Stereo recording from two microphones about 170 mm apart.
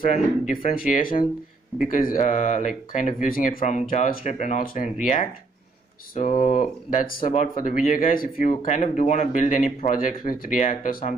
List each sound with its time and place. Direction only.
0.0 s speech: 55° left (ahead or behind)
6.4 s speech: 45° left (ahead or behind)